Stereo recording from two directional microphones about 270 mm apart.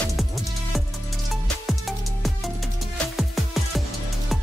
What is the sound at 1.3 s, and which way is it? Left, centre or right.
Music, centre.